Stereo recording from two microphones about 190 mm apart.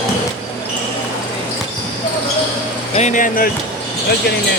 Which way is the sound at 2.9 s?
40° left (ahead or behind).